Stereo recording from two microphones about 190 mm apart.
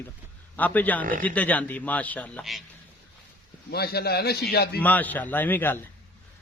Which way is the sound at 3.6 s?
55° left (ahead or behind).